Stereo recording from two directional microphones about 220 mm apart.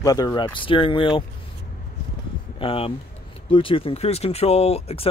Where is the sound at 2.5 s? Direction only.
25° left (ahead or behind).